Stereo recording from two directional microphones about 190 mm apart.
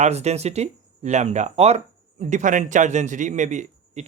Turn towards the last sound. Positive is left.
turn(degrees=-40)  # may be behind; listen again after turning